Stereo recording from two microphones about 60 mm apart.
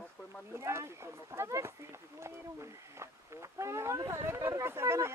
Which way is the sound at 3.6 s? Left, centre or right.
Right.